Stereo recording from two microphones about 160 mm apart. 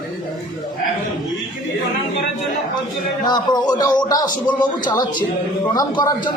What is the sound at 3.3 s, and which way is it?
A man's voice, 25° left (ahead or behind).